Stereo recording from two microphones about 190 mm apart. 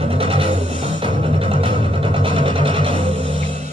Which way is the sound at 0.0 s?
30° right (ahead or behind).